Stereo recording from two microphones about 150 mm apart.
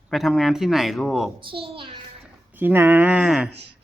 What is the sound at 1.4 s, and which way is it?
Speech, 35° right (ahead or behind).